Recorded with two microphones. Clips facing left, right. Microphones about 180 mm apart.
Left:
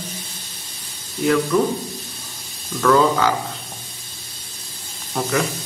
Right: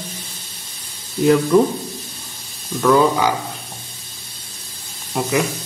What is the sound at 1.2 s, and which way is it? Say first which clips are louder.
Speech: right 4 dB; 30° right (ahead or behind).